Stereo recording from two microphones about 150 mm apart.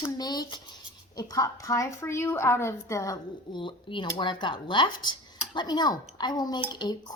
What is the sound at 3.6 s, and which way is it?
Speech, 35° left (ahead or behind).